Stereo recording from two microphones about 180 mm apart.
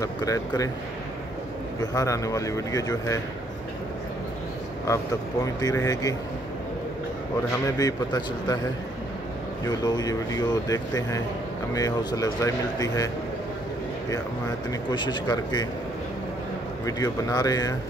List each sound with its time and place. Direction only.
0.0 s speech: 20° left (ahead or behind)
1.8 s speech: 20° left (ahead or behind)
4.8 s speech: 20° left (ahead or behind)
7.6 s speech: 20° left (ahead or behind)
9.7 s speech: 20° left (ahead or behind)
14.7 s speech: 25° left (ahead or behind)
16.8 s speech: 20° left (ahead or behind)